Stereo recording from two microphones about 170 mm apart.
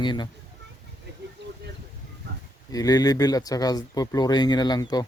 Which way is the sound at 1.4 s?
90° right.